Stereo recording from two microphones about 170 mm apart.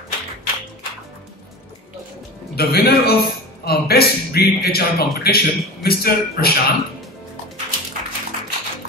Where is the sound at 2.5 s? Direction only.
65° left (ahead or behind).